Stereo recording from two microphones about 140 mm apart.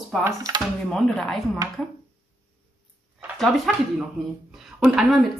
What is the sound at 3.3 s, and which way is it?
Speech, centre (ahead or behind).